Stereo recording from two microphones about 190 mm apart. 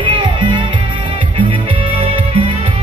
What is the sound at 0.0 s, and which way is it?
Music, 25° right (ahead or behind).